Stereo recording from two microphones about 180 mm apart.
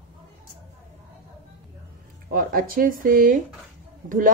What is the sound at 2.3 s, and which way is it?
Speech, 55° right (ahead or behind).